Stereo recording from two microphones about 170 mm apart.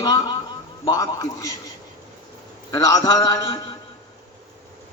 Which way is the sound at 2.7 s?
20° left (ahead or behind).